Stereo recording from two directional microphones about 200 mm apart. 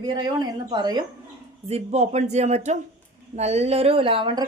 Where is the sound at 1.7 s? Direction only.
35° right (ahead or behind).